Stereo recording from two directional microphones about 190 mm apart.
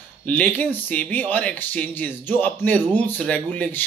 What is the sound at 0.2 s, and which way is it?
Speech, 10° left (ahead or behind).